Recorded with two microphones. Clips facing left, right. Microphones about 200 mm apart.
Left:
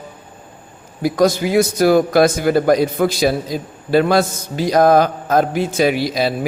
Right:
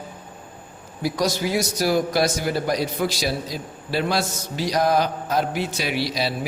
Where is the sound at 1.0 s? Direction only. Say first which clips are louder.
Left 8 dB; 50° left (ahead or behind).